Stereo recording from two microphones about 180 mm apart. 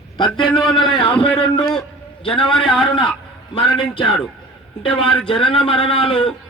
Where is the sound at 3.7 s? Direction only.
30° left (ahead or behind).